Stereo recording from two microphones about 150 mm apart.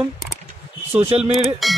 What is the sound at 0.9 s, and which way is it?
Speech, 40° right (ahead or behind).